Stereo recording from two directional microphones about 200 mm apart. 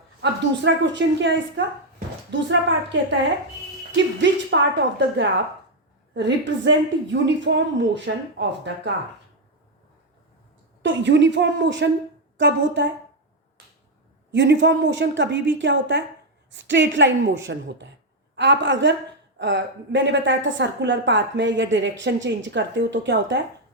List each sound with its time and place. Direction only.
0.2 s a woman's voice: 60° right (ahead or behind)
3.9 s a woman's voice: 65° right (ahead or behind)
10.8 s a woman's voice: 60° right (ahead or behind)
14.3 s a woman's voice: 60° right (ahead or behind)